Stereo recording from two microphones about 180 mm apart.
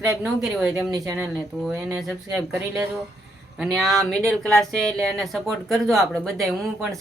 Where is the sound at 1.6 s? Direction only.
Centre (ahead or behind).